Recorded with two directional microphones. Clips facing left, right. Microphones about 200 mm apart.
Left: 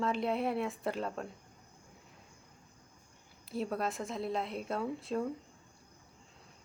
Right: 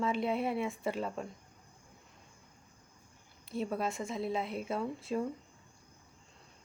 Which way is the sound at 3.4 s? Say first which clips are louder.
Even; centre (ahead or behind).